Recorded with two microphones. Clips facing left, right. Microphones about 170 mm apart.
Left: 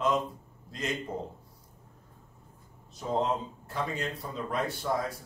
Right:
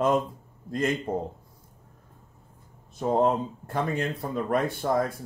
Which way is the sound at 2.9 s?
55° right (ahead or behind).